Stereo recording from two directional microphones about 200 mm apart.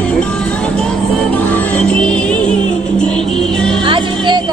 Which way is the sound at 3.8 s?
25° right (ahead or behind).